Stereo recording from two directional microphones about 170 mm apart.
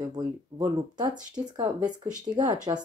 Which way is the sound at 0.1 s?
25° right (ahead or behind).